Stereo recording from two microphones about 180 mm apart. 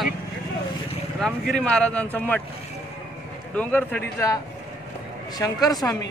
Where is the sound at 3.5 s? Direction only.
10° left (ahead or behind).